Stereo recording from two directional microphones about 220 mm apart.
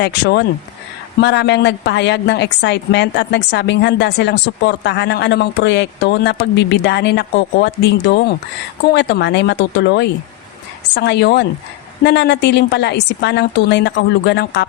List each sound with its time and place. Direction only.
0.0 s a woman's voice: 50° left (ahead or behind)